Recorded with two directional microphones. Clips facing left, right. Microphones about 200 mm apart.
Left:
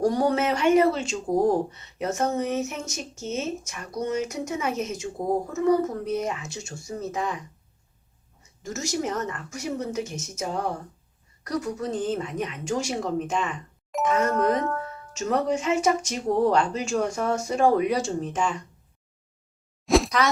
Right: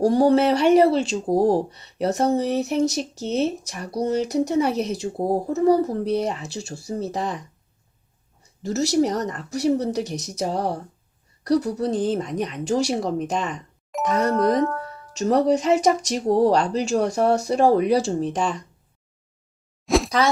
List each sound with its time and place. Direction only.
0.0 s speech: 30° right (ahead or behind)
8.6 s speech: 35° right (ahead or behind)
13.9 s speech: centre (ahead or behind)
14.4 s music: 5° left (ahead or behind)
15.1 s speech: 35° right (ahead or behind)
19.8 s a sound: centre (ahead or behind)